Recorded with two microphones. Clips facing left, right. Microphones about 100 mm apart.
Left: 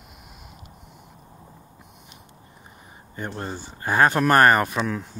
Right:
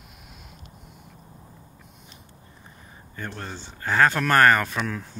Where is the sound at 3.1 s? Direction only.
20° left (ahead or behind).